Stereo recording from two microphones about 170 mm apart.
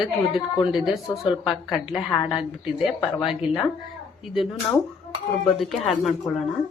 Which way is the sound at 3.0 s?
30° left (ahead or behind).